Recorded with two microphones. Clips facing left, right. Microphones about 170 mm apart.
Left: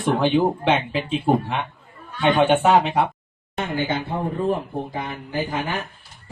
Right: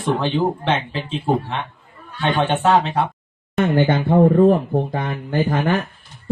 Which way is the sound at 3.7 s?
60° right (ahead or behind).